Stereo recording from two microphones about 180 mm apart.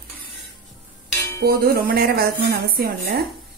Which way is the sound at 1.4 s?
60° right (ahead or behind).